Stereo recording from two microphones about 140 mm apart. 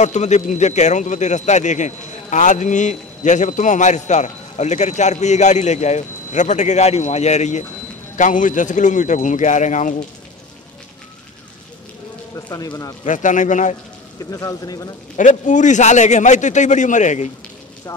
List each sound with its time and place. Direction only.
0.0 s speech: 55° left (ahead or behind)
8.2 s speech: 65° left (ahead or behind)
12.4 s speech: 30° left (ahead or behind)
13.0 s speech: 65° left (ahead or behind)
14.3 s speech: 25° left (ahead or behind)
15.1 s speech: 65° left (ahead or behind)